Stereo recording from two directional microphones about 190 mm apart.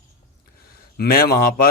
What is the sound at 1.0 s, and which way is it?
Speech, 55° left (ahead or behind).